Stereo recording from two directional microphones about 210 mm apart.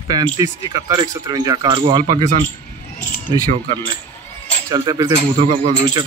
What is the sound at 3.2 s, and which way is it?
Speech, 20° right (ahead or behind).